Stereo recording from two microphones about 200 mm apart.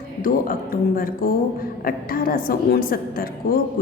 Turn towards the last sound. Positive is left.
turn(degrees=45)  # may be behind; listen again after turning